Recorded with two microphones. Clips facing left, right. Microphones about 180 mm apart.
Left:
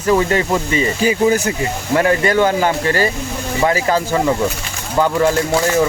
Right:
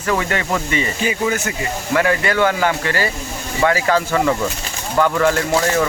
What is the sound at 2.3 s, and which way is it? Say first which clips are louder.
Speech: left 2 dB; 15° left (ahead or behind).